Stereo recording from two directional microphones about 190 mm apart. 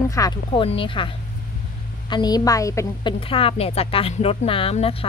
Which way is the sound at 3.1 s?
30° left (ahead or behind).